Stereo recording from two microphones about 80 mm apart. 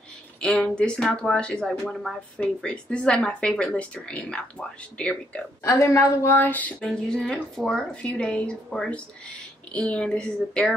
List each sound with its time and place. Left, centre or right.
0.4 s speech: centre
5.6 s a woman's voice: left
6.8 s speech: centre